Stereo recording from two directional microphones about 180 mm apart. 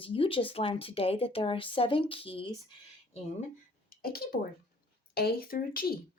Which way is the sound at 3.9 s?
55° left (ahead or behind).